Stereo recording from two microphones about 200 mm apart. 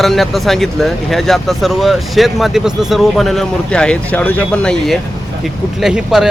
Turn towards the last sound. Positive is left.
turn(degrees=0)  # may be behind; listen again after turning